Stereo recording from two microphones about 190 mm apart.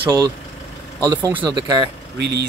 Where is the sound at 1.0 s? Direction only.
20° right (ahead or behind).